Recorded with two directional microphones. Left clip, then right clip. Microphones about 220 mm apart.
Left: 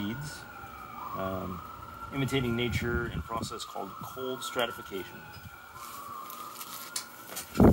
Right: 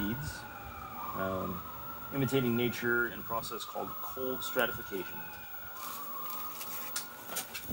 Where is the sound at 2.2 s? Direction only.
30° left (ahead or behind).